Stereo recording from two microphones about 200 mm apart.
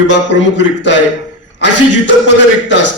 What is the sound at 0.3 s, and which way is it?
A man's voice, 60° left (ahead or behind).